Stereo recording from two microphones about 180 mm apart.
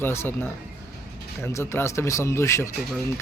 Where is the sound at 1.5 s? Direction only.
15° left (ahead or behind).